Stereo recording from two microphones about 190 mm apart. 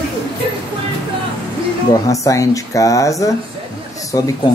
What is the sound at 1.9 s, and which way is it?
Speech, 15° left (ahead or behind).